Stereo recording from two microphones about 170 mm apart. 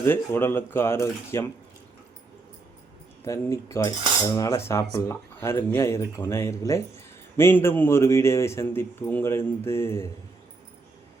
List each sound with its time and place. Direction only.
0.0 s cutlery: 15° left (ahead or behind)
3.2 s cutlery: 15° left (ahead or behind)